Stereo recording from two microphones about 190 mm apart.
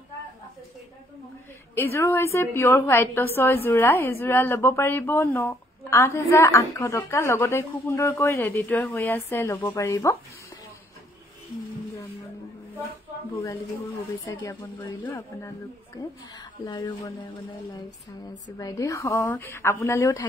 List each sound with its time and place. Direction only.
1.8 s a woman's voice: 10° left (ahead or behind)
14.2 s a woman's voice: 20° left (ahead or behind)
16.6 s speech: 20° left (ahead or behind)
18.6 s a woman's voice: 20° left (ahead or behind)